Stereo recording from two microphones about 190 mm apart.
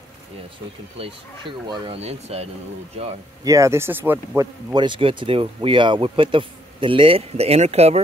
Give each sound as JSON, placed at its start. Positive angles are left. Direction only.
{"t": 0.9, "sound": "speech", "side_deg": -25}
{"t": 3.4, "sound": "speech", "side_deg": -15}
{"t": 4.7, "sound": "speech", "side_deg": -25}